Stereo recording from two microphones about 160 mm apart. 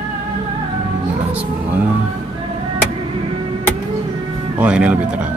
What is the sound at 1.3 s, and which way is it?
Speech, 10° right (ahead or behind).